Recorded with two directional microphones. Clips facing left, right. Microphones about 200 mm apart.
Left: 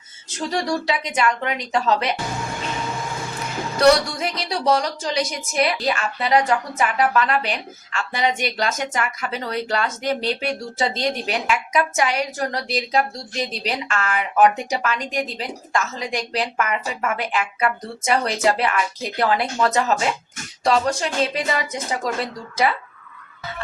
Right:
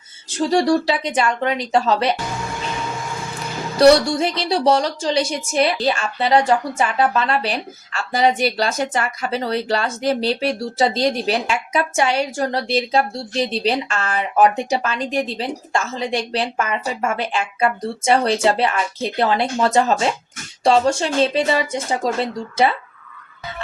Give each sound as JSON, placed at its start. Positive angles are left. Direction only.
{"t": 0.3, "sound": "speech", "side_deg": -30}
{"t": 3.8, "sound": "a woman's voice", "side_deg": -30}